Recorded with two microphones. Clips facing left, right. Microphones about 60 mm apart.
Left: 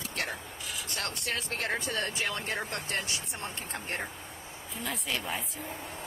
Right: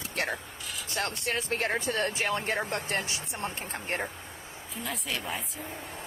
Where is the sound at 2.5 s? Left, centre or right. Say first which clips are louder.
Right 4 dB; right.